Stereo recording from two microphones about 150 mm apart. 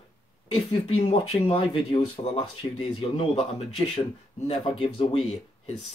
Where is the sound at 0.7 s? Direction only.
40° left (ahead or behind).